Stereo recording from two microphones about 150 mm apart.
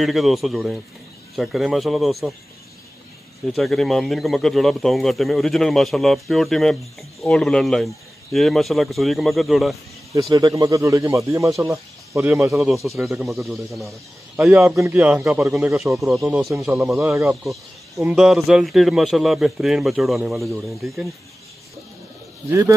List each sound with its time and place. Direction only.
0.0 s a man's voice: centre (ahead or behind)
3.5 s a man's voice: centre (ahead or behind)
10.3 s speech: 25° right (ahead or behind)
12.8 s a man's voice: centre (ahead or behind)
14.3 s a man's voice: 15° right (ahead or behind)
16.0 s a man's voice: centre (ahead or behind)
17.0 s speech: 15° right (ahead or behind)
17.4 s a man's voice: centre (ahead or behind)
22.5 s speech: 20° right (ahead or behind)